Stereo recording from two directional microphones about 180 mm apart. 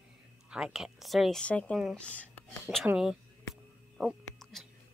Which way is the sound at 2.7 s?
5° right (ahead or behind).